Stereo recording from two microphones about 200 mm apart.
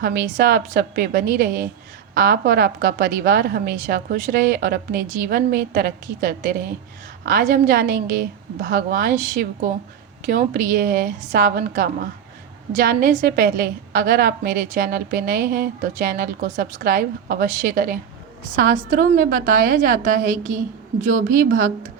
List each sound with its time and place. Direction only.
0.0 s a woman's voice: 50° right (ahead or behind)